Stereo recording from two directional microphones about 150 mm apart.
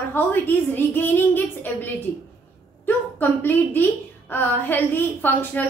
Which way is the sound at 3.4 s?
15° left (ahead or behind).